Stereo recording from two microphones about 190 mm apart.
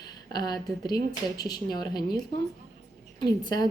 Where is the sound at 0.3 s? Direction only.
20° left (ahead or behind).